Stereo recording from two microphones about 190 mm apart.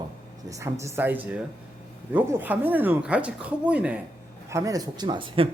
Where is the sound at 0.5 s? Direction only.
15° right (ahead or behind).